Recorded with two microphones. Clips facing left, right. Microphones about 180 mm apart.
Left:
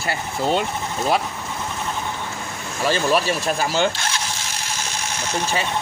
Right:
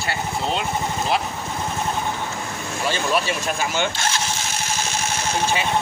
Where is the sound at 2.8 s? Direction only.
40° left (ahead or behind).